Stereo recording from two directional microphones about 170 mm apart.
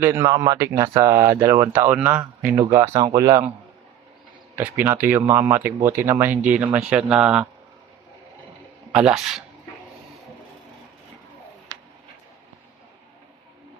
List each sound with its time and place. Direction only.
0.0 s speech: 15° right (ahead or behind)
4.5 s speech: 10° right (ahead or behind)
8.9 s speech: 5° right (ahead or behind)